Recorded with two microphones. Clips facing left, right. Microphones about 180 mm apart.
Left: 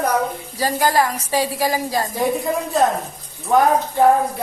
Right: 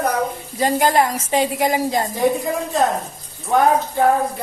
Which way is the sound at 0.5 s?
20° right (ahead or behind).